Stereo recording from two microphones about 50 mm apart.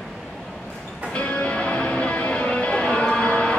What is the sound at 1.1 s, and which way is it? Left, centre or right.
Music, left.